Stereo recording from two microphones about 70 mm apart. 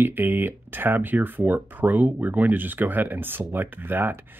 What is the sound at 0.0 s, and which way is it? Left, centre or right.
Speech, right.